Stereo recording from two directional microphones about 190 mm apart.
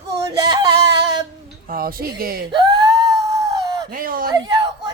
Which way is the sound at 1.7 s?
50° right (ahead or behind).